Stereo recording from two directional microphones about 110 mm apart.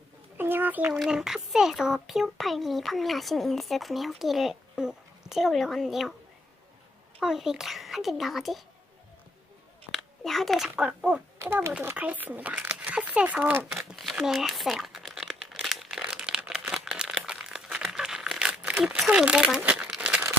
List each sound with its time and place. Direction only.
0.3 s a sound: 20° right (ahead or behind)
0.9 s a child's voice: 5° right (ahead or behind)
7.2 s a child's voice: 5° right (ahead or behind)
9.9 s speech: centre (ahead or behind)
11.3 s speech: 20° right (ahead or behind)
13.7 s crumpling: centre (ahead or behind)